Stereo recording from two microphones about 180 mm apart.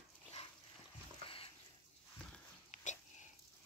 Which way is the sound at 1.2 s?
30° left (ahead or behind).